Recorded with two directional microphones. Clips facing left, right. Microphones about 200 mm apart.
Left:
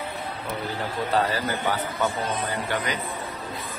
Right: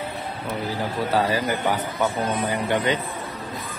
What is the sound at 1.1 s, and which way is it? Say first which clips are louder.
Speech: right 2 dB; 15° right (ahead or behind).